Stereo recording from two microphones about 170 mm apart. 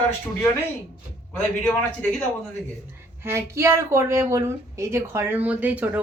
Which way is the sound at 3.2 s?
15° right (ahead or behind).